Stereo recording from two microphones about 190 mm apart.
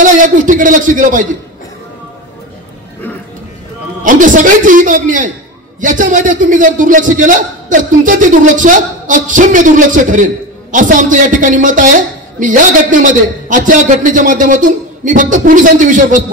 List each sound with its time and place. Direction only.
0.0 s a man's voice: 45° right (ahead or behind)
4.0 s a man's voice: 45° right (ahead or behind)